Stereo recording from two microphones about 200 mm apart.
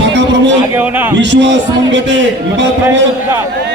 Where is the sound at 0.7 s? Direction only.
10° right (ahead or behind).